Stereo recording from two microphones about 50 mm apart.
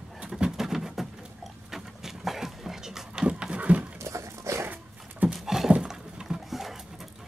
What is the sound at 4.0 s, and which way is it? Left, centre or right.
Dog, right.